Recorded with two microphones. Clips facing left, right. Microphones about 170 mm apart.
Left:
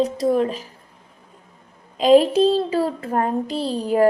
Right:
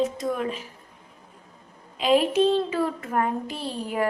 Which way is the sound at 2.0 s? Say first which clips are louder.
Left 6 dB; 40° left (ahead or behind).